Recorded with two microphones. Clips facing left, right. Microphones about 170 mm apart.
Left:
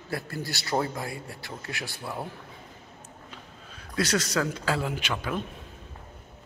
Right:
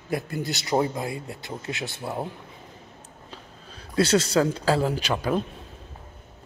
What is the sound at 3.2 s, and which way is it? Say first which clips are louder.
Speech: right 2 dB; 30° right (ahead or behind).